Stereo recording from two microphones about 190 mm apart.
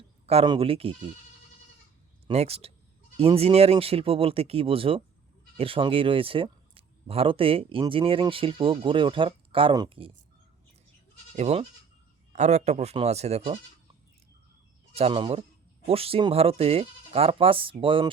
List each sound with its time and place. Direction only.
0.3 s speech: 25° right (ahead or behind)
2.2 s speech: 35° right (ahead or behind)
11.3 s speech: 35° right (ahead or behind)
14.9 s speech: 30° right (ahead or behind)